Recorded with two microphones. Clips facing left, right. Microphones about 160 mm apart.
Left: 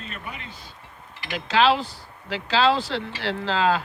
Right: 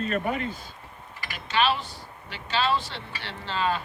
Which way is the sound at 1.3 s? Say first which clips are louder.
Left 5 dB; 90° left.